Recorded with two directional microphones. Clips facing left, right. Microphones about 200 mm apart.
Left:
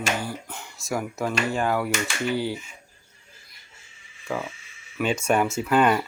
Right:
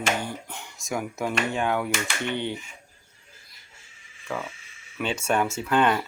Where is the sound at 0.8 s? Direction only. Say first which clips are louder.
Left 1 dB; centre (ahead or behind).